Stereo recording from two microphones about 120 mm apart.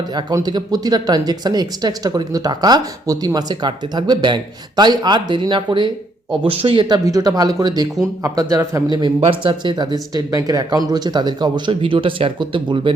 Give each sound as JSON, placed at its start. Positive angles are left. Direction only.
{"t": 0.1, "sound": "a man's voice", "side_deg": -35}